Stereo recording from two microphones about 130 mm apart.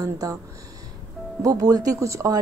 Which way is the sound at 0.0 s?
25° right (ahead or behind).